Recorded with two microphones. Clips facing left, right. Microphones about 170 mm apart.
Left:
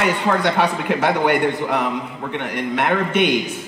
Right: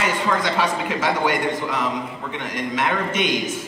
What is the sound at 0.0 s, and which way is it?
A man's voice, 60° left (ahead or behind).